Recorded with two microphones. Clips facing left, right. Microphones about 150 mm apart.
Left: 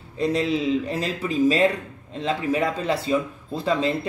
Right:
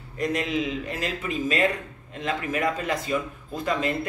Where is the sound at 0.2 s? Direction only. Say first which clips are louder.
Left 4 dB; 30° left (ahead or behind).